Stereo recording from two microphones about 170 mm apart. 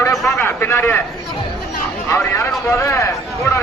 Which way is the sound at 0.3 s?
15° left (ahead or behind).